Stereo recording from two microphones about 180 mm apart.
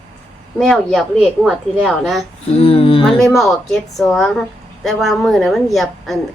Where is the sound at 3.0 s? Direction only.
Centre (ahead or behind).